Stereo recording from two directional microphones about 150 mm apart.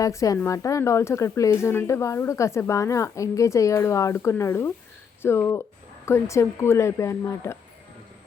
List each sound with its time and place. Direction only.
0.0 s a woman's voice: 20° left (ahead or behind)